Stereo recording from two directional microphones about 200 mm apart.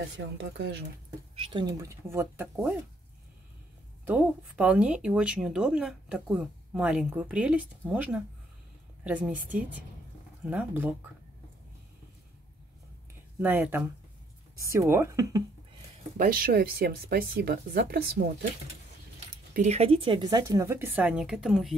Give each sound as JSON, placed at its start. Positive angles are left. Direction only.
{"t": 0.4, "sound": "speech", "side_deg": -60}
{"t": 1.3, "sound": "speech", "side_deg": -25}
{"t": 4.0, "sound": "speech", "side_deg": -5}
{"t": 13.4, "sound": "speech", "side_deg": -10}
{"t": 16.2, "sound": "speech", "side_deg": -45}
{"t": 19.5, "sound": "speech", "side_deg": -35}